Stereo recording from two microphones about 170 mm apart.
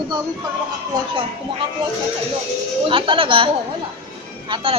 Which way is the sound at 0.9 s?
20° right (ahead or behind).